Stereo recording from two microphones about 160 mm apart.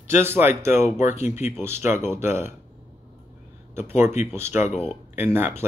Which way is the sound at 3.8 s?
15° right (ahead or behind).